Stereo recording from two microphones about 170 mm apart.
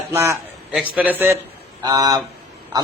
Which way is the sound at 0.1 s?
15° right (ahead or behind).